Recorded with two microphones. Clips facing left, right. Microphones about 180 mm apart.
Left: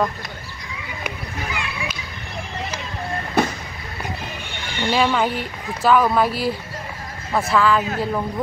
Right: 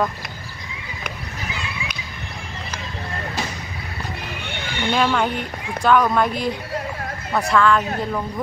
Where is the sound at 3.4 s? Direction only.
60° left (ahead or behind).